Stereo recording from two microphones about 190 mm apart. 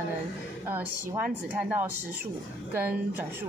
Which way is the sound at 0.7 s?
10° right (ahead or behind).